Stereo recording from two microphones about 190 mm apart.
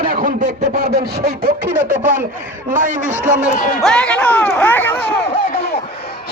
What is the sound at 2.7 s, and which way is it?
Speech, 45° right (ahead or behind).